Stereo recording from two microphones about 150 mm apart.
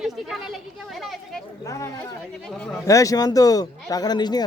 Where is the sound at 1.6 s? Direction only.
20° left (ahead or behind).